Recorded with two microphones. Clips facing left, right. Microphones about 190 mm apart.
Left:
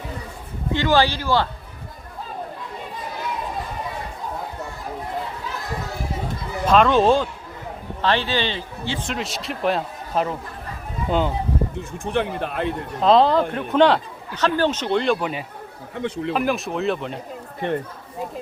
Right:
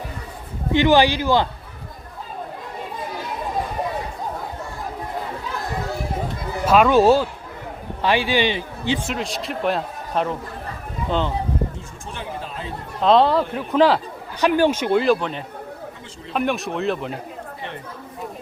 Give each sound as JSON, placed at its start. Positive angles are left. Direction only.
{"t": 0.7, "sound": "a man's voice", "side_deg": -15}
{"t": 6.7, "sound": "a man's voice", "side_deg": -5}
{"t": 9.0, "sound": "speech", "side_deg": 0}
{"t": 12.0, "sound": "speech", "side_deg": 60}
{"t": 13.0, "sound": "speech", "side_deg": 0}
{"t": 14.3, "sound": "a man's voice", "side_deg": -15}
{"t": 15.2, "sound": "a man's voice", "side_deg": 10}
{"t": 16.0, "sound": "speech", "side_deg": 65}
{"t": 16.3, "sound": "speech", "side_deg": 0}
{"t": 17.6, "sound": "speech", "side_deg": 55}